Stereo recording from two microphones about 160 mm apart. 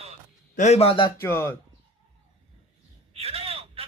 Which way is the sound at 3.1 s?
40° right (ahead or behind).